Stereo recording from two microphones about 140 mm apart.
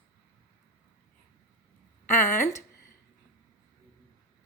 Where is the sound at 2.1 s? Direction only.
20° left (ahead or behind).